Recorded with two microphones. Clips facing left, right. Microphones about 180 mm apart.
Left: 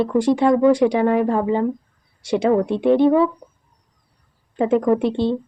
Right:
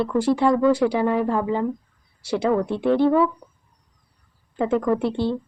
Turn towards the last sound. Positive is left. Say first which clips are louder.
# left 4 dB
turn(degrees=20)  # may be behind; listen again after turning